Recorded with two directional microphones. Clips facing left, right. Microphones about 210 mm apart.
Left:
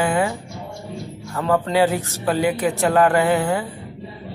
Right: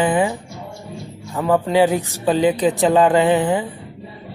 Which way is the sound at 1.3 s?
15° right (ahead or behind).